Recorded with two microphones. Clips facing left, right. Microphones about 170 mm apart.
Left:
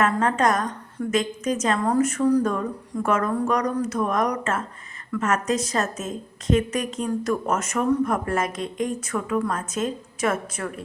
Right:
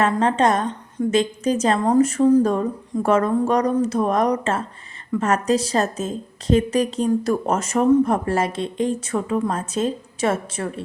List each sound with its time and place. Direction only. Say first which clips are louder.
0.0 s a woman's voice: right 3 dB; 30° right (ahead or behind)